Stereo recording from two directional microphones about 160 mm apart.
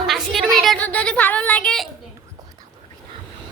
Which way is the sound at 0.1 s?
Centre (ahead or behind).